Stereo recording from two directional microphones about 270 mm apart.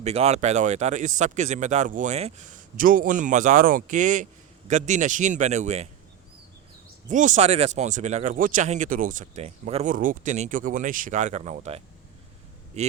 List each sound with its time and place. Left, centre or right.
0.0 s speech: right
7.1 s speech: right